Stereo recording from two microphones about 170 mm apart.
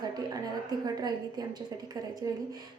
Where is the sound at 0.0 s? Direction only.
25° right (ahead or behind).